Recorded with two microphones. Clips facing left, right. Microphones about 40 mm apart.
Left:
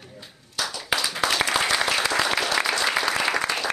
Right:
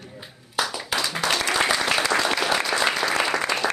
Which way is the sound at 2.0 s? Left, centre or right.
Centre.